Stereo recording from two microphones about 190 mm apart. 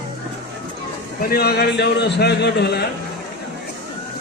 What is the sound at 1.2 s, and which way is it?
A man's voice, 55° left (ahead or behind).